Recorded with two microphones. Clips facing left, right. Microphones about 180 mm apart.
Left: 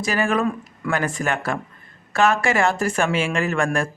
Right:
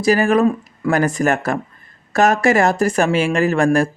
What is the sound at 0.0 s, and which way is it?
Speech, 40° right (ahead or behind).